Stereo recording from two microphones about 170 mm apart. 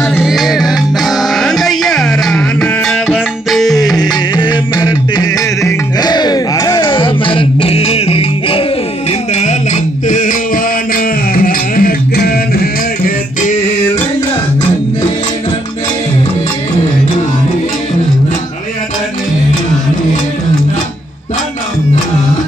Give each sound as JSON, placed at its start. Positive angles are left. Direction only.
{"t": 0.2, "sound": "music", "side_deg": 0}
{"t": 3.9, "sound": "music", "side_deg": 25}
{"t": 9.3, "sound": "a sound", "side_deg": 40}
{"t": 10.0, "sound": "music", "side_deg": 50}